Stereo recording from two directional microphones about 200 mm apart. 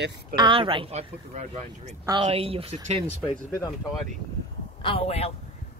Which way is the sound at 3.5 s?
15° left (ahead or behind).